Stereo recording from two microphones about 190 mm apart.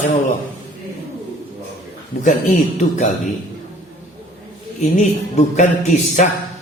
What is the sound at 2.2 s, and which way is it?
Speech, 40° left (ahead or behind).